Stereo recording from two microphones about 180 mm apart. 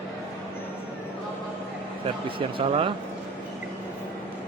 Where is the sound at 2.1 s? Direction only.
30° right (ahead or behind).